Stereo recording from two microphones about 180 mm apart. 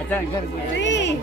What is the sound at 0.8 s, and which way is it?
Music, 85° left.